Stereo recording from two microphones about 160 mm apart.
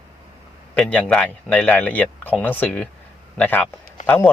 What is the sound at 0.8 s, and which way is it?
Speech, 10° left (ahead or behind).